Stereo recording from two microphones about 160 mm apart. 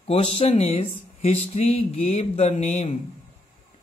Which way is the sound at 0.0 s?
35° left (ahead or behind).